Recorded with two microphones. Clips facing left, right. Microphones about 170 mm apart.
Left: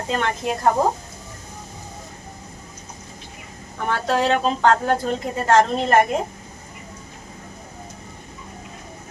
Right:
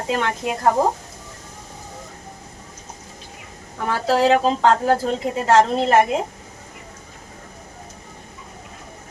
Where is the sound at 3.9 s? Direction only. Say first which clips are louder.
Right 3 dB; 5° right (ahead or behind).